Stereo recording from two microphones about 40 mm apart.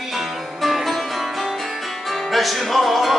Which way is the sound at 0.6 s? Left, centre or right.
Centre.